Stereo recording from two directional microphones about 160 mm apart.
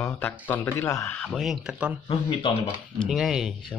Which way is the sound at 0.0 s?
15° left (ahead or behind).